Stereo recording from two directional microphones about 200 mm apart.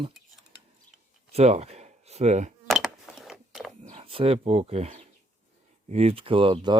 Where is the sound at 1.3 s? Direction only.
30° right (ahead or behind).